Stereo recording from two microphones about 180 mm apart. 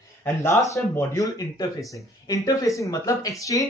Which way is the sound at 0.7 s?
15° left (ahead or behind).